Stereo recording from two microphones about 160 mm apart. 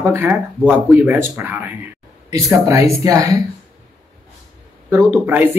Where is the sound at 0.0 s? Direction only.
15° right (ahead or behind).